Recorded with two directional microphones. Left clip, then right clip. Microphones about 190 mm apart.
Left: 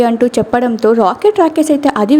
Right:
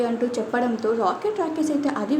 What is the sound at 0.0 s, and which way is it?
A woman's voice, 45° left (ahead or behind).